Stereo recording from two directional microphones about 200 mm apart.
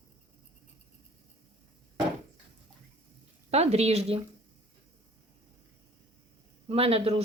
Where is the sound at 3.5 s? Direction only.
30° right (ahead or behind).